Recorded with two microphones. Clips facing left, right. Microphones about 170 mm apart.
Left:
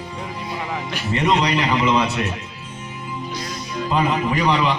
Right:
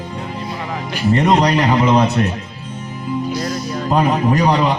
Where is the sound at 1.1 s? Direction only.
40° right (ahead or behind).